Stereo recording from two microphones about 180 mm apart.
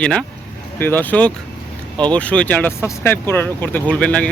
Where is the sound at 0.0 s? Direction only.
5° left (ahead or behind).